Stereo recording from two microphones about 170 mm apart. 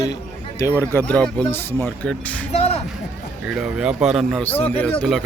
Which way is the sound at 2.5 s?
40° left (ahead or behind).